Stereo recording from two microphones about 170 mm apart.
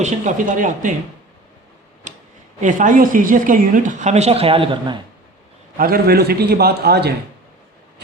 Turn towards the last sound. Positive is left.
turn(degrees=-70)  # may be behind; listen again after turning